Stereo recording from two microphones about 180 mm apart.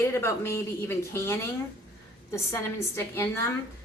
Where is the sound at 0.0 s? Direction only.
15° left (ahead or behind).